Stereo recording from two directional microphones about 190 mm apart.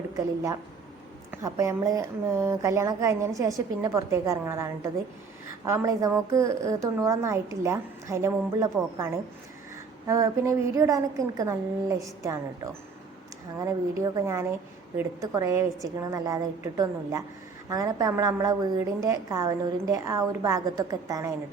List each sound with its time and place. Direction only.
1.3 s a woman's voice: 15° right (ahead or behind)
13.6 s a woman's voice: 20° right (ahead or behind)